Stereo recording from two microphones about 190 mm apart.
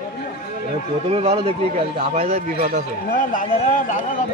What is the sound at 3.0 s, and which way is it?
Speech, 45° left (ahead or behind).